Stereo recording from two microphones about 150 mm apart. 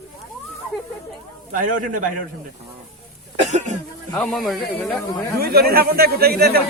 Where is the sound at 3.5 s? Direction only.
50° right (ahead or behind).